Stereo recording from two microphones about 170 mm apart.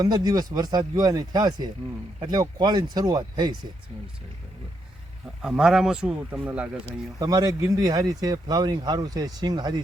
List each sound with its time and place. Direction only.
0.0 s speech: 25° right (ahead or behind)
5.4 s speech: centre (ahead or behind)
7.2 s speech: 20° right (ahead or behind)